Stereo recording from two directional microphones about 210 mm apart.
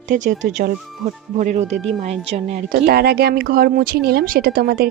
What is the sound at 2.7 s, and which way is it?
Speech, 50° right (ahead or behind).